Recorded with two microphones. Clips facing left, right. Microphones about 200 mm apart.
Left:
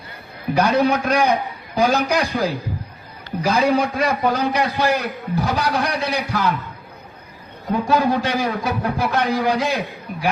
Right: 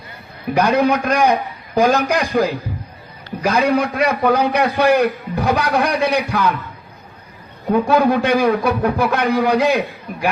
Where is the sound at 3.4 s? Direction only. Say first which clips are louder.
Right 2 dB; 65° right (ahead or behind).